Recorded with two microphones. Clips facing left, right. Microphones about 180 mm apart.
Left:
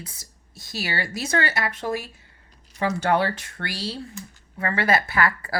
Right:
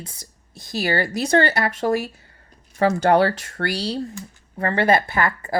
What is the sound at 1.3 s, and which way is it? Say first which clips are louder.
Speech: right 7 dB; 35° right (ahead or behind).